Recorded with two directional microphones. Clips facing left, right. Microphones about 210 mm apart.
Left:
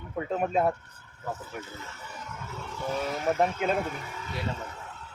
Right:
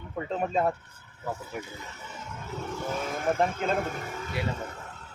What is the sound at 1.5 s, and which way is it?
Speech, 15° right (ahead or behind).